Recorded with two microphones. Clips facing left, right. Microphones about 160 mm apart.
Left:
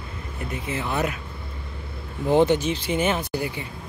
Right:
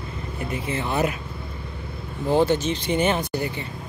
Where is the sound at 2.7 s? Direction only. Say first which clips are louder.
Right 1 dB; 5° left (ahead or behind).